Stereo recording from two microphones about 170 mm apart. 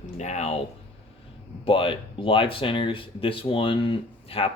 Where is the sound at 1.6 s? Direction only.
30° left (ahead or behind).